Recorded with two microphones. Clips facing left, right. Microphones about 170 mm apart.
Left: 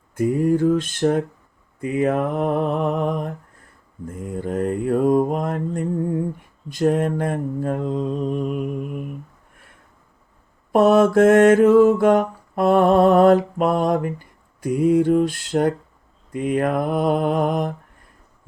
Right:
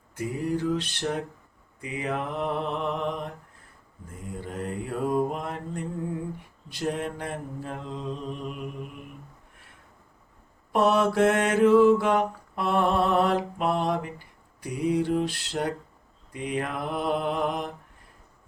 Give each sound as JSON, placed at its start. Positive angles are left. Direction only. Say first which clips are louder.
{"t": 0.2, "sound": "mantra", "louder": "left 10 dB", "side_deg": 50}
{"t": 10.7, "sound": "mantra", "louder": "left 8 dB", "side_deg": 45}